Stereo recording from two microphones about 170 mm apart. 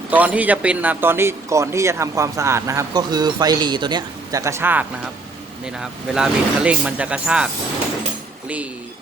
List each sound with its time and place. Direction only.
0.1 s a man's voice: 10° right (ahead or behind)